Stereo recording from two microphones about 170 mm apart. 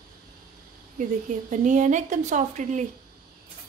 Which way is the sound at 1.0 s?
45° right (ahead or behind).